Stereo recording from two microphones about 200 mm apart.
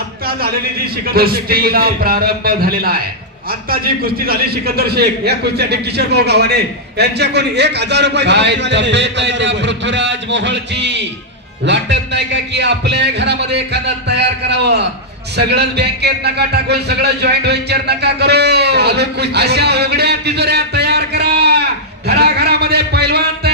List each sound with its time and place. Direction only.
1.0 s a man's voice: 50° right (ahead or behind)